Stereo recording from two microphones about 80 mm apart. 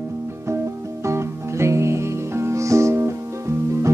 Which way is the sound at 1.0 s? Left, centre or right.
Right.